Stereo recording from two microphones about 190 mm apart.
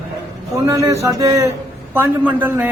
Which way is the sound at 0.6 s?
15° right (ahead or behind).